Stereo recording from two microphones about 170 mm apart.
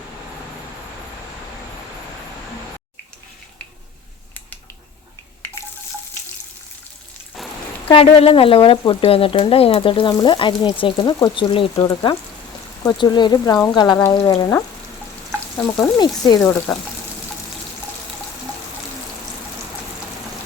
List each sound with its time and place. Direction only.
7.9 s frying: 30° left (ahead or behind)
12.8 s speech: 25° left (ahead or behind)
15.6 s speech: 25° left (ahead or behind)
16.7 s speech: 5° left (ahead or behind)